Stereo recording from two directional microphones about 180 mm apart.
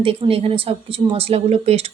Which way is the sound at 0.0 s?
30° right (ahead or behind).